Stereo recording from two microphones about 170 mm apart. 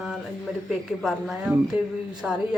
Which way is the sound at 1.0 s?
Centre (ahead or behind).